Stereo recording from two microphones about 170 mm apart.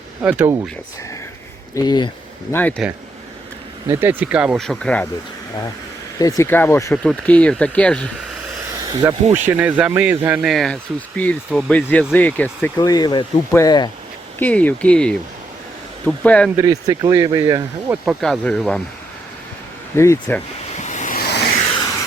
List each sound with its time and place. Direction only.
0.2 s speech: 10° right (ahead or behind)
1.7 s speech: 25° left (ahead or behind)
2.5 s speech: 10° left (ahead or behind)
3.8 s speech: 10° right (ahead or behind); by 5.0 s 5° left (ahead or behind)
6.1 s speech: 20° left (ahead or behind)
7.0 s speech: 5° left (ahead or behind)
9.0 s speech: 15° right (ahead or behind); by 12.7 s 10° left (ahead or behind)
12.8 s speech: 25° left (ahead or behind)
14.3 s speech: 10° left (ahead or behind)
16.6 s speech: 20° right (ahead or behind)
18.0 s speech: centre (ahead or behind)
20.0 s speech: 10° left (ahead or behind)
20.7 s waves: 45° left (ahead or behind)
21.2 s a sound: 70° left (ahead or behind)